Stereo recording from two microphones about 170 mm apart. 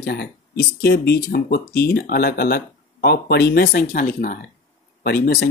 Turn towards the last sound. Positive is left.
turn(degrees=75)  # may be behind; listen again after turning